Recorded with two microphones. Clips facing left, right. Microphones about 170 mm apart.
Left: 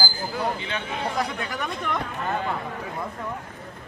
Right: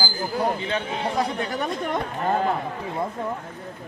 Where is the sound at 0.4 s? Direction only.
35° right (ahead or behind).